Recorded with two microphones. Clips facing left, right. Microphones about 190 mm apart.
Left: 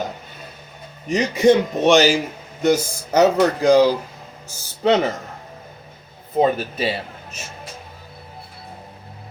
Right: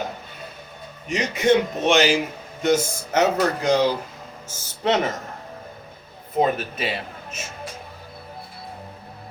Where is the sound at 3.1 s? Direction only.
35° left (ahead or behind).